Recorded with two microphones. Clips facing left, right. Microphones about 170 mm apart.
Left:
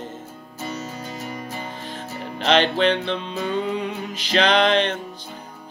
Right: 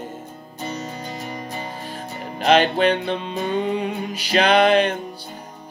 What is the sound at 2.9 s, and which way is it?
Music, 50° right (ahead or behind).